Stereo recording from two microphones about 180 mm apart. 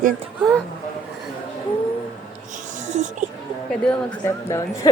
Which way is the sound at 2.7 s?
40° right (ahead or behind).